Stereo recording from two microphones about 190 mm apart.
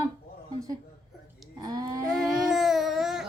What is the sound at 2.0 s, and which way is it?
Babbling, centre (ahead or behind).